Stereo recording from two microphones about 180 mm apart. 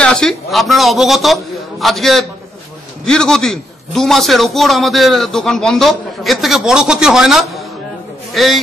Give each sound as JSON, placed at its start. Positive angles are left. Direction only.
{"t": 0.0, "sound": "a man's voice", "side_deg": 5}